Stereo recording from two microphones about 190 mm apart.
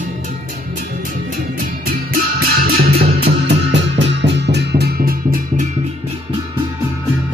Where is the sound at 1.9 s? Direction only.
50° right (ahead or behind).